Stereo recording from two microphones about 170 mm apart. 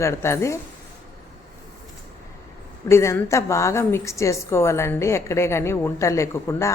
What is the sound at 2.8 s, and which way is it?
A woman's voice, 15° left (ahead or behind).